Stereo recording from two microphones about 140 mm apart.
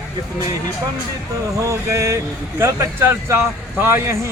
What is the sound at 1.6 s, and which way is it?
Speech, 20° right (ahead or behind).